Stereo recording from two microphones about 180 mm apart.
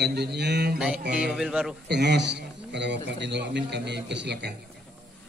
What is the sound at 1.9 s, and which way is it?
A man's voice, 70° right (ahead or behind).